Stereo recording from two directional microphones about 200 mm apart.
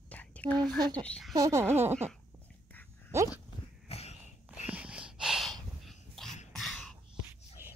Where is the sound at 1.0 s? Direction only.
5° left (ahead or behind).